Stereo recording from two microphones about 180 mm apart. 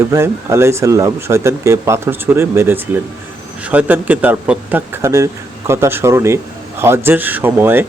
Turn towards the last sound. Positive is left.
turn(degrees=-10)  # may be behind; listen again after turning